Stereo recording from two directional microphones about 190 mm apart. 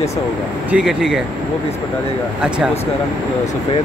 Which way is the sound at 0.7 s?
5° right (ahead or behind).